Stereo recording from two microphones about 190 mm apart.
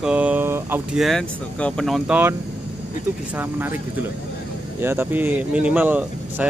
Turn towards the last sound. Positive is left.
turn(degrees=-10)  # may be behind; listen again after turning